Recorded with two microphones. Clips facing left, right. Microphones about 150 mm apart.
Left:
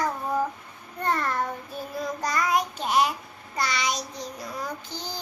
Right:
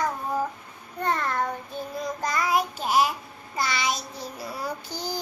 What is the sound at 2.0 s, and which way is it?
Child singing, centre (ahead or behind).